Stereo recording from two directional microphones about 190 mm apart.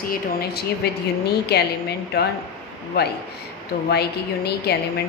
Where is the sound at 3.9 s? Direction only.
60° left (ahead or behind).